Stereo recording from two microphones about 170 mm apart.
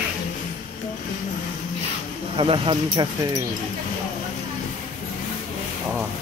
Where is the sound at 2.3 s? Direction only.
30° right (ahead or behind).